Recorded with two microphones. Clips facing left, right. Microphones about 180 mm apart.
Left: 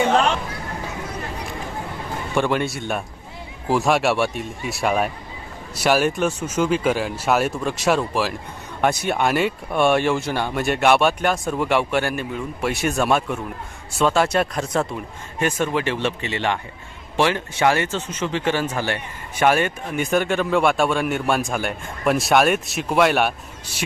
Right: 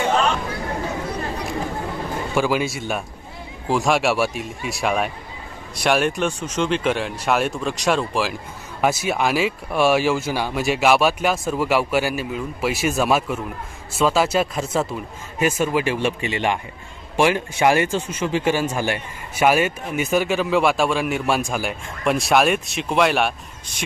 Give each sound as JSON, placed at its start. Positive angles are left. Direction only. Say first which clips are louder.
{"t": 2.3, "sound": "speech", "louder": "even", "side_deg": -5}